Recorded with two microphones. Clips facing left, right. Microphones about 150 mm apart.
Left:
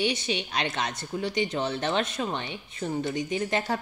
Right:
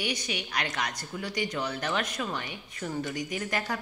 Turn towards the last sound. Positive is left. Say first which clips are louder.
# left 4 dB
turn(degrees=25)  # may be behind; listen again after turning